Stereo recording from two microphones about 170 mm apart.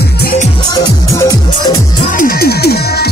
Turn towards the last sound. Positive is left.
turn(degrees=70)  # may be behind; listen again after turning